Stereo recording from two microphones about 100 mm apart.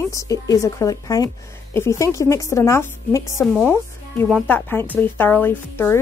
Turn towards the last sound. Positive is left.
turn(degrees=20)  # may be behind; listen again after turning